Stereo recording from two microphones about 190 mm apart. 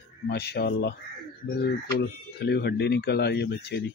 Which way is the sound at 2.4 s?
60° left (ahead or behind).